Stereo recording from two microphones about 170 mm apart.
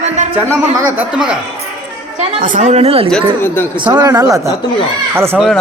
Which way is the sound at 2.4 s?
50° right (ahead or behind).